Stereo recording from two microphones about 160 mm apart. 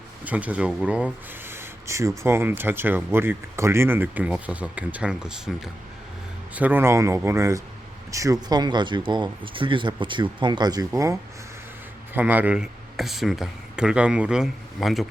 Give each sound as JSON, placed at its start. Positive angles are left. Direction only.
{"t": 0.3, "sound": "speech", "side_deg": -10}
{"t": 6.5, "sound": "speech", "side_deg": -10}